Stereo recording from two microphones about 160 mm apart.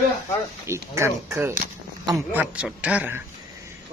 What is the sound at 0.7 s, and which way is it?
Speech, 15° right (ahead or behind).